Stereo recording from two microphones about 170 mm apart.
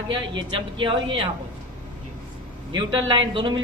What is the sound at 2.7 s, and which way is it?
Speech, 30° right (ahead or behind).